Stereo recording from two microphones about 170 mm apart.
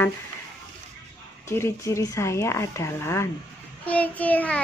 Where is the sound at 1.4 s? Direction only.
15° left (ahead or behind).